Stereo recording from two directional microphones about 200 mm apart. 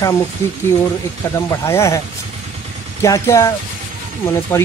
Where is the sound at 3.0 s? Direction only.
15° left (ahead or behind).